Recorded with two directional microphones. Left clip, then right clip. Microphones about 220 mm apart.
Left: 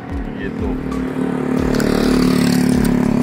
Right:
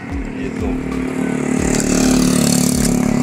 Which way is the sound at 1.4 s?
45° right (ahead or behind).